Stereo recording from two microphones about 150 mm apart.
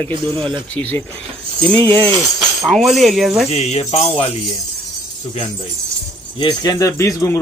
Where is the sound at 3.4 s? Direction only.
45° left (ahead or behind).